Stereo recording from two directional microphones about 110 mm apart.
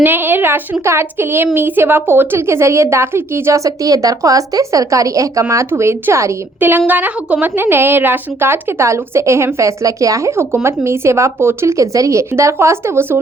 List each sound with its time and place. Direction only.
0.0 s a woman's voice: 20° right (ahead or behind)